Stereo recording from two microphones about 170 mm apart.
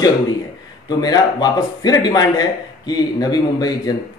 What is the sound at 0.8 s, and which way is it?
Speech, 25° left (ahead or behind).